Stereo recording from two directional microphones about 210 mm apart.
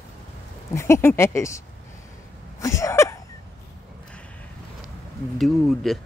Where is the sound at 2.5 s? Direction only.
15° left (ahead or behind).